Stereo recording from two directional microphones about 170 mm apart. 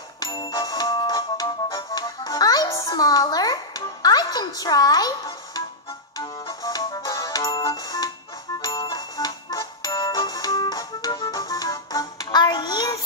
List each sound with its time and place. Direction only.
0.2 s music: 25° left (ahead or behind)